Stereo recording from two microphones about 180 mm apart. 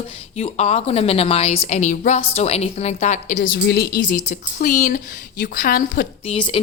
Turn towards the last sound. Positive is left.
turn(degrees=35)  # may be behind; listen again after turning